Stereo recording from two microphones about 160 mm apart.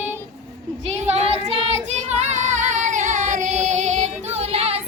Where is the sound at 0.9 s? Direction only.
45° right (ahead or behind).